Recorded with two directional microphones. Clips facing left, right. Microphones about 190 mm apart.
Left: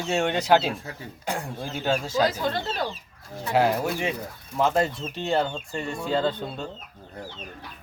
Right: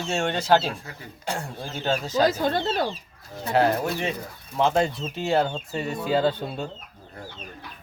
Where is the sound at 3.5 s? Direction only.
10° left (ahead or behind); by 6.6 s 10° right (ahead or behind).